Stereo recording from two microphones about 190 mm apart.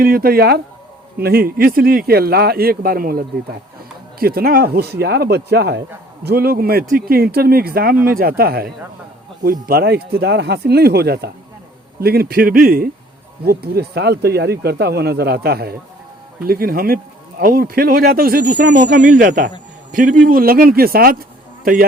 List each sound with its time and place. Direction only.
0.0 s a man's voice: 50° right (ahead or behind)